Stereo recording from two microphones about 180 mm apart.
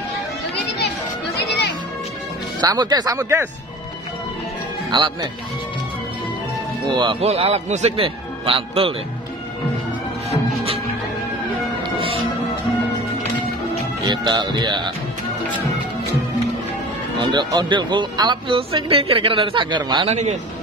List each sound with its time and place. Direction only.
2.6 s speech: 25° right (ahead or behind)
4.9 s speech: 25° right (ahead or behind)
6.9 s a man's voice: 25° right (ahead or behind)
14.0 s speech: 25° right (ahead or behind)
17.3 s speech: 25° right (ahead or behind)